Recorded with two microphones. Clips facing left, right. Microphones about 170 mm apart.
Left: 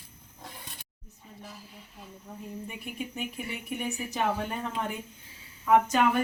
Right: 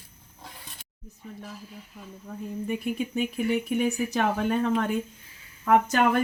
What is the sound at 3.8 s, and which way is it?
Speech, 85° right.